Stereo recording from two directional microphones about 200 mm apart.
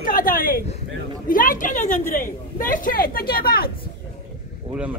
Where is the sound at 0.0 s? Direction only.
45° left (ahead or behind).